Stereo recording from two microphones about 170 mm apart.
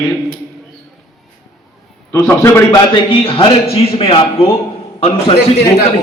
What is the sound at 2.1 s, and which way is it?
Speech, 15° left (ahead or behind).